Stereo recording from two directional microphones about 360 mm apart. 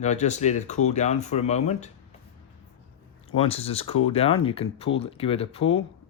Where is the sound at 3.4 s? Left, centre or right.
Centre.